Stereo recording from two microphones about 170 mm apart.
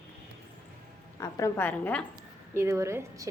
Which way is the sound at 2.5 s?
15° right (ahead or behind).